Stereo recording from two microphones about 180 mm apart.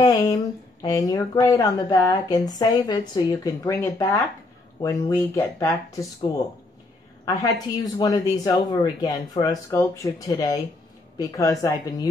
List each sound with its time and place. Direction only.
0.0 s speech: 20° left (ahead or behind)
7.2 s speech: 20° left (ahead or behind)